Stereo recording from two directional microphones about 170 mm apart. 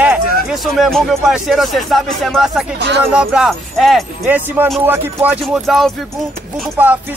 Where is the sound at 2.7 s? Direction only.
90° right.